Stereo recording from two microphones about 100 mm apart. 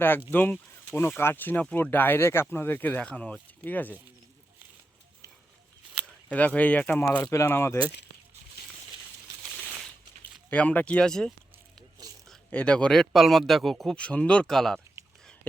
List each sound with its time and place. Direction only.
1.2 s speech: 20° left (ahead or behind)
5.9 s a sound: 10° right (ahead or behind)
6.3 s speech: 15° left (ahead or behind)
10.5 s speech: 15° left (ahead or behind)
12.0 s a sound: 40° right (ahead or behind)
12.5 s speech: 15° left (ahead or behind)